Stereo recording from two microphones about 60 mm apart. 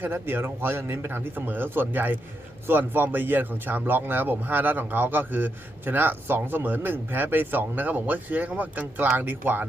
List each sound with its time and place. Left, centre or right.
0.0 s speech: right